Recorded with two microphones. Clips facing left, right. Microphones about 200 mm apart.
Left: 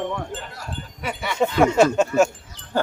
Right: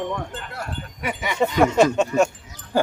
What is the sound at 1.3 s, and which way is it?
Speech, centre (ahead or behind).